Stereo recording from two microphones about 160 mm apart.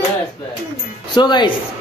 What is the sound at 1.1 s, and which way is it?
Speech, 30° left (ahead or behind).